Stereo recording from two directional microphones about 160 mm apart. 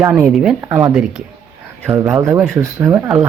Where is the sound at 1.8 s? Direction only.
15° right (ahead or behind).